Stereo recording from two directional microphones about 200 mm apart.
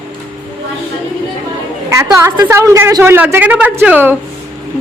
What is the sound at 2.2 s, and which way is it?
A woman's voice, 15° right (ahead or behind).